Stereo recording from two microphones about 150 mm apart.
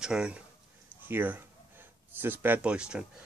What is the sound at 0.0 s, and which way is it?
A man's voice, 5° right (ahead or behind).